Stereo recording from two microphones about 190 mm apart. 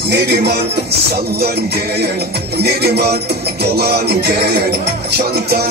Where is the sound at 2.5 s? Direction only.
55° right (ahead or behind).